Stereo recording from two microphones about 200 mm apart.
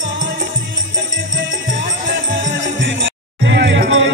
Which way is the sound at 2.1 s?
70° right (ahead or behind).